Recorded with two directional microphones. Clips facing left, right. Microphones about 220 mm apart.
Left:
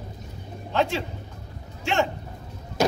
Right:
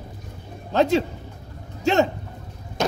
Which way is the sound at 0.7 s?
40° right (ahead or behind).